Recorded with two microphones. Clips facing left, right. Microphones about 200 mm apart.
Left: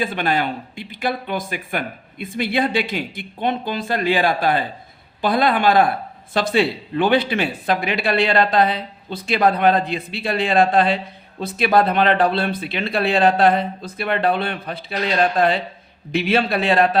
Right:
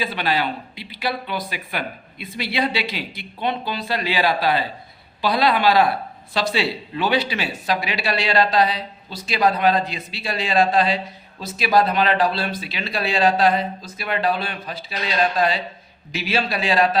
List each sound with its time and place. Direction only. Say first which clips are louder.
0.0 s speech: left 2 dB; 50° left (ahead or behind)